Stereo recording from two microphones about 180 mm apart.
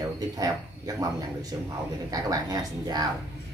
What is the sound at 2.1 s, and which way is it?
Speech, 20° right (ahead or behind).